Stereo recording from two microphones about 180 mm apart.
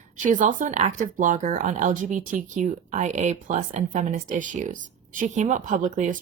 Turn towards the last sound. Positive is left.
turn(degrees=-45)  # may be behind; listen again after turning